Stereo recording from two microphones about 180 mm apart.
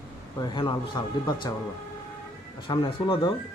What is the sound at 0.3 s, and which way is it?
Speech, 25° left (ahead or behind).